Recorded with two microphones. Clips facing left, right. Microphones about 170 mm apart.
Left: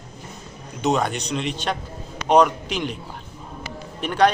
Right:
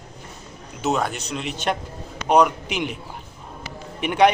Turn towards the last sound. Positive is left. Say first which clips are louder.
# right 1 dB
turn(degrees=-15)  # may be behind; listen again after turning